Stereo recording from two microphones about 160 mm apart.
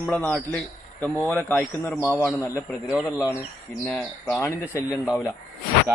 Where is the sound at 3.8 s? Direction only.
5° left (ahead or behind).